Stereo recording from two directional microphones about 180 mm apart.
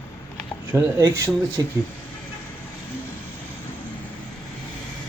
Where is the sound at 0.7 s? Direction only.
15° right (ahead or behind).